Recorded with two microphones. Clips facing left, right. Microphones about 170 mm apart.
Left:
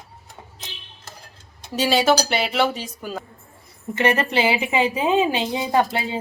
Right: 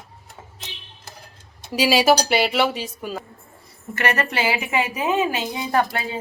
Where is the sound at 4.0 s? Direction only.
25° left (ahead or behind).